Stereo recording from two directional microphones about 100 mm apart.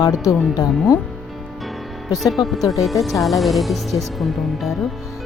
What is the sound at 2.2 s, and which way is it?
Speech, centre (ahead or behind).